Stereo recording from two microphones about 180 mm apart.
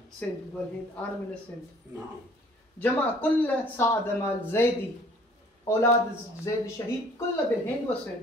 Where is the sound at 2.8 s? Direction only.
10° left (ahead or behind).